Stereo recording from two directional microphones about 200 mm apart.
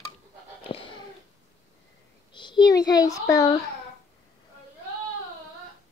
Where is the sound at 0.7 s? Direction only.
30° left (ahead or behind).